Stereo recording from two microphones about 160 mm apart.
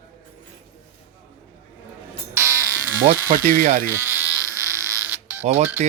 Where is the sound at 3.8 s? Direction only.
15° right (ahead or behind).